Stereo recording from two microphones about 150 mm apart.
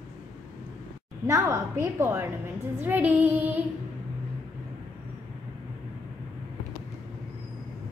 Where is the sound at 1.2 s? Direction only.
20° right (ahead or behind).